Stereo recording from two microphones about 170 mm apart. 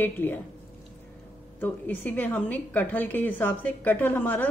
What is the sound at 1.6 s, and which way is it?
A woman's voice, 10° left (ahead or behind).